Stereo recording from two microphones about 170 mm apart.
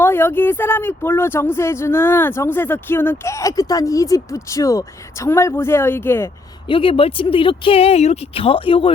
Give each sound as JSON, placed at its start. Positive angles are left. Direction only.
{"t": 0.0, "sound": "speech", "side_deg": 15}
{"t": 6.7, "sound": "speech", "side_deg": 30}